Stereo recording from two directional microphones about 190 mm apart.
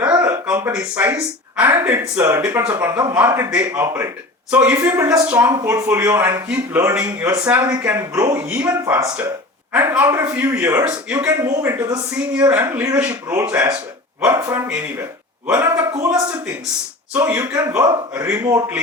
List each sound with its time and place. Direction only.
0.0 s speech: 10° right (ahead or behind)
17.2 s speech: 15° right (ahead or behind)